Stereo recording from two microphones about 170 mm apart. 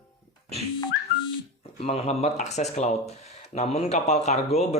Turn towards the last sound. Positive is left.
turn(degrees=40)  # may be behind; listen again after turning